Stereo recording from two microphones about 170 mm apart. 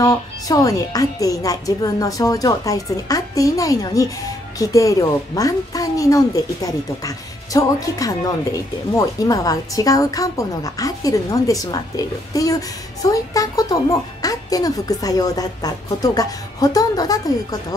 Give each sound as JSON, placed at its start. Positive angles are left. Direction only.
{"t": 0.0, "sound": "a woman's voice", "side_deg": 20}